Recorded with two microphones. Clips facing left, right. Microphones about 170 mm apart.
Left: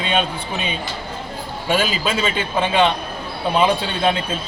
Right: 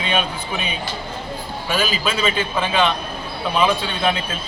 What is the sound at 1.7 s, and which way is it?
A man's voice, 25° left (ahead or behind).